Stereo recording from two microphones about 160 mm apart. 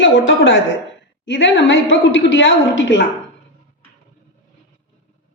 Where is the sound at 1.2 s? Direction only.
90° left.